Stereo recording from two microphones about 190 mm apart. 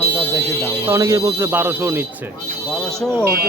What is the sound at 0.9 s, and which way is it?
A man's voice, 15° right (ahead or behind).